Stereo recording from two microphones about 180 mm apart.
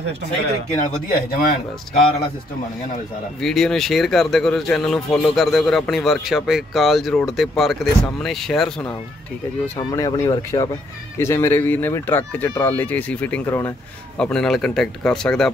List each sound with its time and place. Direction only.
1.0 s speech: 50° left (ahead or behind)
3.3 s speech: centre (ahead or behind)
9.8 s speech: 20° left (ahead or behind)
14.2 s speech: 5° left (ahead or behind)